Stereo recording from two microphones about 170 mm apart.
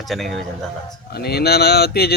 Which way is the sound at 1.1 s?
70° left (ahead or behind).